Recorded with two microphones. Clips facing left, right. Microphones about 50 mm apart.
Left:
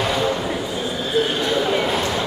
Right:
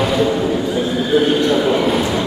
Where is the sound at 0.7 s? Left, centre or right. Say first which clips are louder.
Right 4 dB; centre.